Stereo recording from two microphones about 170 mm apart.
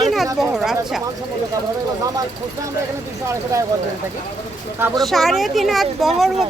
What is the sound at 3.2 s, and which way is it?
Speech, 20° right (ahead or behind).